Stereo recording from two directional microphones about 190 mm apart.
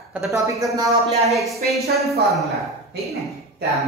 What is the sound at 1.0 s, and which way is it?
Speech, 35° right (ahead or behind).